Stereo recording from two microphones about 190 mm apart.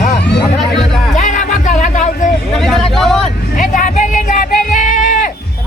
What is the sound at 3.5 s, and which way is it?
Speech, 40° left (ahead or behind).